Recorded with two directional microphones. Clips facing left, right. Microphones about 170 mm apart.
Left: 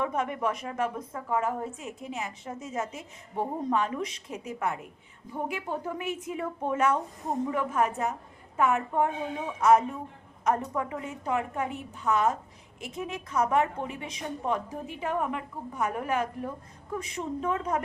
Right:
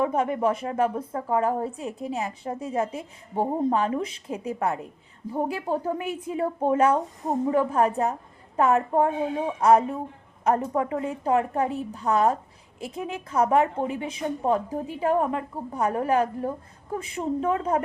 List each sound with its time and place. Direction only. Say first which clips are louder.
0.0 s a woman's voice: right 6 dB; 30° right (ahead or behind)